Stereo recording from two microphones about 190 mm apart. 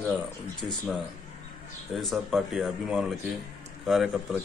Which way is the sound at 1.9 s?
Centre (ahead or behind).